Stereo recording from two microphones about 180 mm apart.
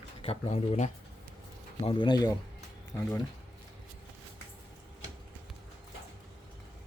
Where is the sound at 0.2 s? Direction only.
35° left (ahead or behind); by 3.2 s 15° left (ahead or behind).